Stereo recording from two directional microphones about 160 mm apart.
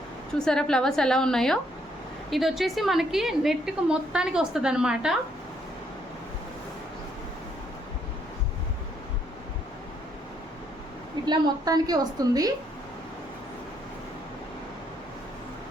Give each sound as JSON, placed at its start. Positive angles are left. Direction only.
{"t": 0.3, "sound": "a woman's voice", "side_deg": 5}
{"t": 11.3, "sound": "a woman's voice", "side_deg": -25}